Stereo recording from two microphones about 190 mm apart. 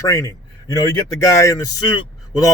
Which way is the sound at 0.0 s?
20° left (ahead or behind).